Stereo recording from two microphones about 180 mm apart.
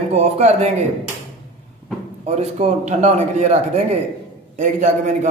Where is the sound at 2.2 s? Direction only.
35° right (ahead or behind).